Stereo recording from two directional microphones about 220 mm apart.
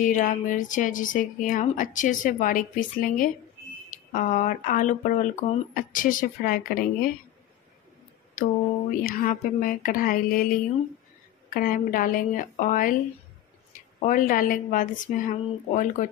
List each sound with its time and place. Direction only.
0.0 s speech: 35° left (ahead or behind)
9.0 s speech: 40° left (ahead or behind)
11.5 s speech: 40° left (ahead or behind)
14.0 s speech: 40° left (ahead or behind)